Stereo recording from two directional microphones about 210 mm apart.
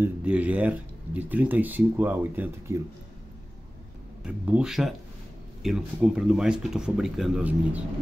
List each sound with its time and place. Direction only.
0.0 s speech: 5° right (ahead or behind)
4.2 s speech: 5° right (ahead or behind)